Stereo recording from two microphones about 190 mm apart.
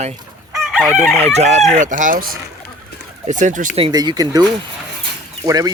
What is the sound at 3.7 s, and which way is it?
Speech, 25° right (ahead or behind).